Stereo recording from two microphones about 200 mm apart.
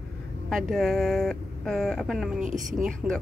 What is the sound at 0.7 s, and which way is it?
Speech, centre (ahead or behind).